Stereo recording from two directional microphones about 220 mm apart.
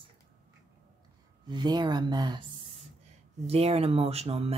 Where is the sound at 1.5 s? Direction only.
20° right (ahead or behind).